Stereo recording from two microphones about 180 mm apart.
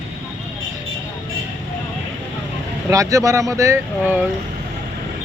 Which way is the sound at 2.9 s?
20° right (ahead or behind).